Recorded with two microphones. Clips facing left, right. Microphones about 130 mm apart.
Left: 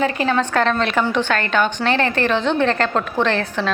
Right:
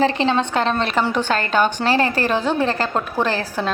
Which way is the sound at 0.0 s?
30° right (ahead or behind).